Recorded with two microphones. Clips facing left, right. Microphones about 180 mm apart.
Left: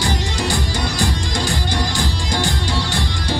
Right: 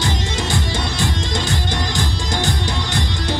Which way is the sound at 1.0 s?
20° right (ahead or behind).